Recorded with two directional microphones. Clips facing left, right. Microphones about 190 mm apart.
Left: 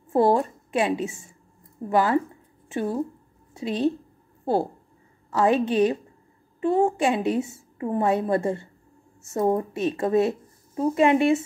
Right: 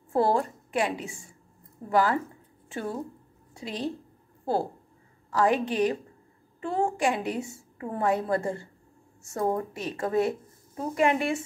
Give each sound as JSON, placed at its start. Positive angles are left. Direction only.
{"t": 0.1, "sound": "a woman's voice", "side_deg": 20}
{"t": 5.3, "sound": "a woman's voice", "side_deg": 25}